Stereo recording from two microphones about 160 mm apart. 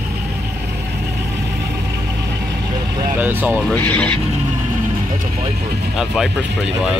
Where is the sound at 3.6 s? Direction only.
10° left (ahead or behind).